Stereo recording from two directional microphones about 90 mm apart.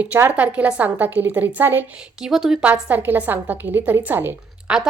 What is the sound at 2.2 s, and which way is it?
A woman's voice, 5° right (ahead or behind).